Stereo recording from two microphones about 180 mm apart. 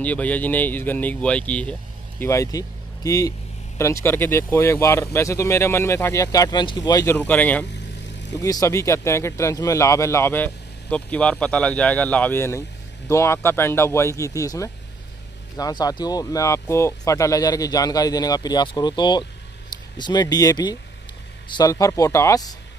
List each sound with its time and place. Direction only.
0.0 s speech: 10° left (ahead or behind)
8.4 s speech: 20° left (ahead or behind)